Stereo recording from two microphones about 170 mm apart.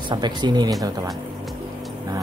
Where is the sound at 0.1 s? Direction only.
25° right (ahead or behind).